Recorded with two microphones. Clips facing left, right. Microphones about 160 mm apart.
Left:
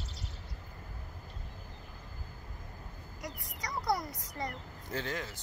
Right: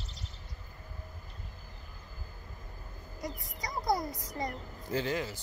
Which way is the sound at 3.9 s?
35° right (ahead or behind).